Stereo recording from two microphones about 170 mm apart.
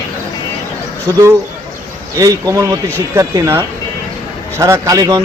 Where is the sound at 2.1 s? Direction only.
20° right (ahead or behind).